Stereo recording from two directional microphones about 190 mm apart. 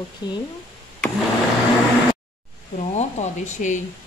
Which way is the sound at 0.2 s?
25° left (ahead or behind).